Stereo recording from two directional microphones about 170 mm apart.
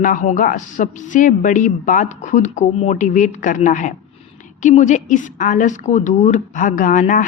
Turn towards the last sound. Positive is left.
turn(degrees=50)  # may be behind; listen again after turning